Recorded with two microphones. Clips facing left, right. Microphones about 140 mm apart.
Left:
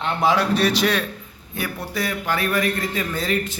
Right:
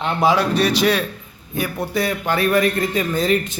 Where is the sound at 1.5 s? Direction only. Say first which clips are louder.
Right 6 dB; 15° right (ahead or behind).